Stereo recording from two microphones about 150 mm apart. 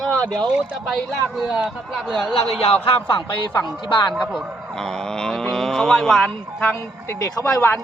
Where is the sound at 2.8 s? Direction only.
35° left (ahead or behind).